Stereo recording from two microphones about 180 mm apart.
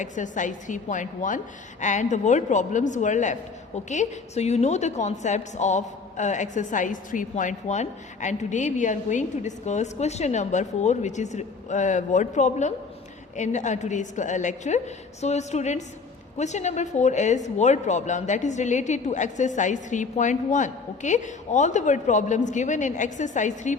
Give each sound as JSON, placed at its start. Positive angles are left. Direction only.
{"t": 0.0, "sound": "a woman's voice", "side_deg": 45}